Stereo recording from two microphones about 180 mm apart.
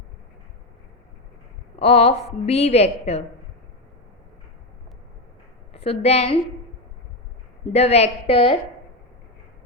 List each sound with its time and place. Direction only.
1.8 s a woman's voice: 35° left (ahead or behind)
5.7 s a woman's voice: 35° left (ahead or behind)
7.7 s a woman's voice: 35° left (ahead or behind)